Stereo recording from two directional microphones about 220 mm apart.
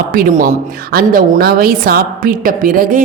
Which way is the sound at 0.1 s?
40° right (ahead or behind).